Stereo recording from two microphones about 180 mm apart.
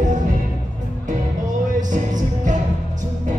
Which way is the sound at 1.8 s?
45° right (ahead or behind).